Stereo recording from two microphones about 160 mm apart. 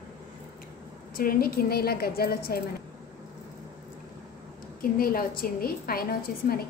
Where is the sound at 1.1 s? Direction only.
65° left (ahead or behind).